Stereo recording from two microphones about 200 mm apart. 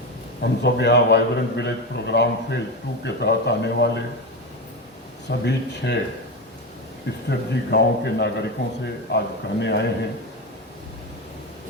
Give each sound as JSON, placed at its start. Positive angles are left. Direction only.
{"t": 0.6, "sound": "a man's voice", "side_deg": 60}
{"t": 5.3, "sound": "a man's voice", "side_deg": 60}
{"t": 7.3, "sound": "a man's voice", "side_deg": 60}